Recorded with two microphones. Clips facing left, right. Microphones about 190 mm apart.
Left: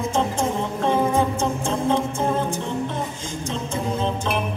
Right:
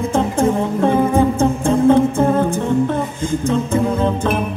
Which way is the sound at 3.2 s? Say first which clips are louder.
Right 11 dB; 55° right (ahead or behind).